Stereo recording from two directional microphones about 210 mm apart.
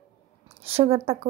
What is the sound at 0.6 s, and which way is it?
Speech, 30° right (ahead or behind).